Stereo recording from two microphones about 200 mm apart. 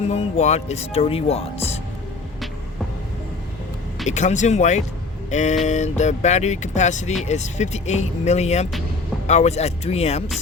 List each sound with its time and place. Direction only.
0.1 s speech: 35° left (ahead or behind)
4.0 s speech: 35° left (ahead or behind)